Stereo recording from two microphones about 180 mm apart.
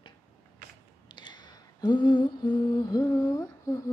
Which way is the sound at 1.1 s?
25° left (ahead or behind).